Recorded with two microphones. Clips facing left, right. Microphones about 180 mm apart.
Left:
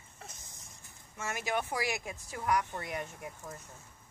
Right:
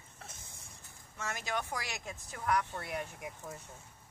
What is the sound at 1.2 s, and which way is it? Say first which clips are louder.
Speech: left 3 dB; 15° left (ahead or behind).